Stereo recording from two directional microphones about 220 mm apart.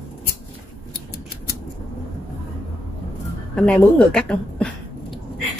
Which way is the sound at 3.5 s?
5° left (ahead or behind).